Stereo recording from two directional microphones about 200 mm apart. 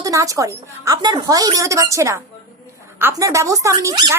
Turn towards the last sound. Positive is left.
turn(degrees=-15)  # may be behind; listen again after turning